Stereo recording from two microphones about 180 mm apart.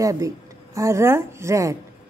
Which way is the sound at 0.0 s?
15° right (ahead or behind).